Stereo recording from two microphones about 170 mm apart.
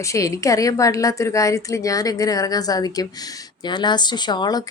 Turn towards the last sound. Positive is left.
turn(degrees=25)  # may be behind; listen again after turning